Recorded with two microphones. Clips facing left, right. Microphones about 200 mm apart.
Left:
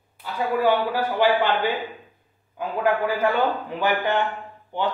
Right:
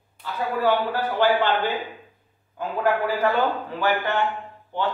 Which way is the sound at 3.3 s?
15° left (ahead or behind).